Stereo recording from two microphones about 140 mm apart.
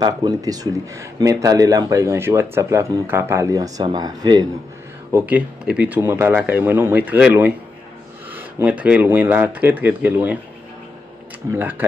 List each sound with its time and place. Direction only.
0.0 s speech: 30° right (ahead or behind)
5.1 s speech: 10° right (ahead or behind)